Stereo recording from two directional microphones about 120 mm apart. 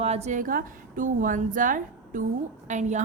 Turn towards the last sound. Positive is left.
turn(degrees=-90)